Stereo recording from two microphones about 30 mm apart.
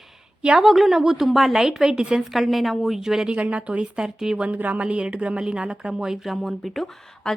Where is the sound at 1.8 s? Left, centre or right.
Right.